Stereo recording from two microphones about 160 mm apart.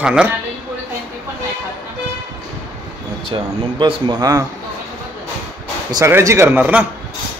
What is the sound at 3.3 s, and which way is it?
Speech, 35° right (ahead or behind).